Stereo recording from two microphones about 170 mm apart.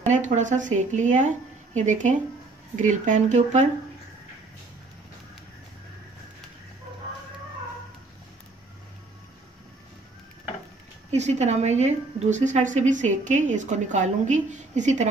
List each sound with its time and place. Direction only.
0.0 s a woman's voice: 45° right (ahead or behind)
11.1 s a woman's voice: 40° right (ahead or behind)